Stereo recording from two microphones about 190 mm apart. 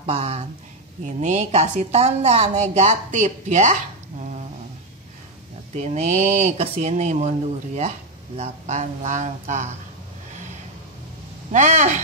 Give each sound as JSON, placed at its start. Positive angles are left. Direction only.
{"t": 0.0, "sound": "a woman's voice", "side_deg": -30}
{"t": 5.8, "sound": "a woman's voice", "side_deg": -35}
{"t": 11.5, "sound": "a woman's voice", "side_deg": -40}